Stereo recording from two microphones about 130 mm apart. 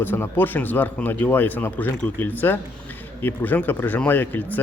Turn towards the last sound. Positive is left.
turn(degrees=15)  # may be behind; listen again after turning